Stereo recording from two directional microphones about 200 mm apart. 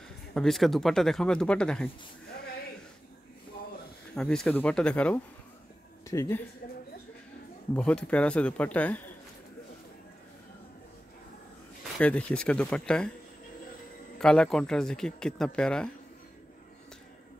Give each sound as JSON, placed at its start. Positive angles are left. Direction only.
{"t": 0.3, "sound": "speech", "side_deg": 0}
{"t": 4.1, "sound": "speech", "side_deg": 5}
{"t": 7.7, "sound": "speech", "side_deg": 5}
{"t": 12.0, "sound": "speech", "side_deg": 5}
{"t": 14.1, "sound": "speech", "side_deg": 5}